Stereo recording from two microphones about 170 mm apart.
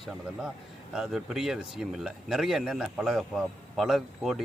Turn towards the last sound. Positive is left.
turn(degrees=0)  # may be behind; listen again after turning